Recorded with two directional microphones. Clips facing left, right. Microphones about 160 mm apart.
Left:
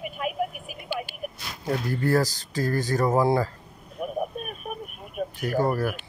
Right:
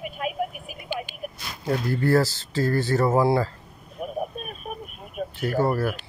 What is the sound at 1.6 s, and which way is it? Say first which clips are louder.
Speech: right 2 dB; 15° left (ahead or behind).